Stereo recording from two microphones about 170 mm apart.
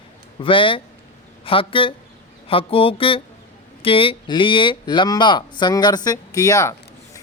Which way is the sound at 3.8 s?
30° left (ahead or behind).